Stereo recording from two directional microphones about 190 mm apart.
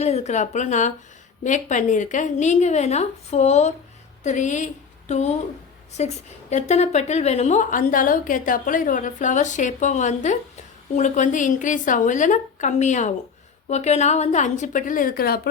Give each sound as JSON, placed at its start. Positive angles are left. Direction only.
{"t": 0.0, "sound": "a woman's voice", "side_deg": 35}